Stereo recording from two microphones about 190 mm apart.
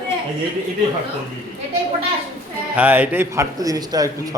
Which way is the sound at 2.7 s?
10° right (ahead or behind).